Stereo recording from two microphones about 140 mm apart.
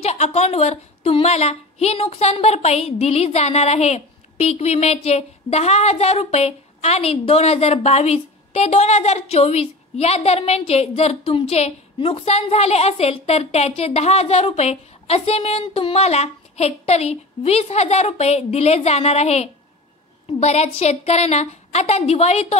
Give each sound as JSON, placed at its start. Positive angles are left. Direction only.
{"t": 0.0, "sound": "a woman's voice", "side_deg": 50}